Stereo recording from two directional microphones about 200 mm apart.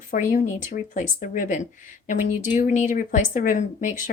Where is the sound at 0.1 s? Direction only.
40° left (ahead or behind).